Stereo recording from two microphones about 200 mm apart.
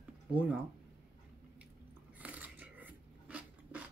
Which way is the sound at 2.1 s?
5° right (ahead or behind).